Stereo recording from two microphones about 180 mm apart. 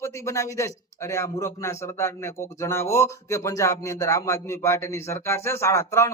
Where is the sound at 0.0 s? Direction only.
15° left (ahead or behind).